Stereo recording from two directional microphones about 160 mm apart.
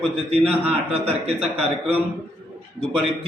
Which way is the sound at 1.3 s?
10° right (ahead or behind).